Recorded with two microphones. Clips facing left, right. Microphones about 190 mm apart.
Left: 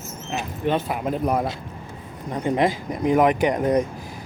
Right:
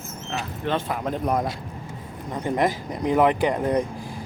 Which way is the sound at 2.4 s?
20° left (ahead or behind).